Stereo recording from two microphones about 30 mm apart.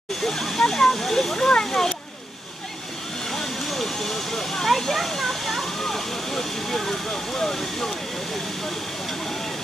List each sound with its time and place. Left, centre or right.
0.2 s a sound: centre
0.6 s speech: centre
3.3 s vehicle: centre
4.7 s speech: centre